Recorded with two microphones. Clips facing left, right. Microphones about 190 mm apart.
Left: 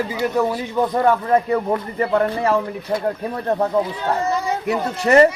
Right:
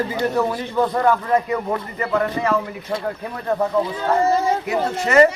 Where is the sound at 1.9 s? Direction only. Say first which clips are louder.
Left 2 dB; 30° left (ahead or behind).